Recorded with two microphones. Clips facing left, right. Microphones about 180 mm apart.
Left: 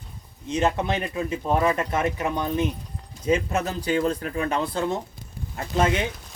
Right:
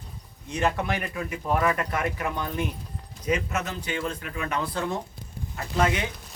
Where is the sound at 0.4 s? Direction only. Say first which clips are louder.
Left 3 dB; 20° left (ahead or behind).